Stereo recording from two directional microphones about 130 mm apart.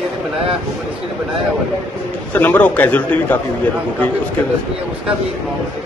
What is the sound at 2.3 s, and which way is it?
A man's voice, 15° left (ahead or behind).